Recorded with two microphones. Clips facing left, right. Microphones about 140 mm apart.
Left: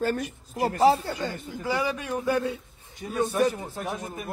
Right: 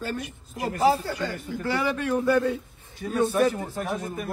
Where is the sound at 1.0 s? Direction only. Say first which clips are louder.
Right 2 dB; 20° left (ahead or behind).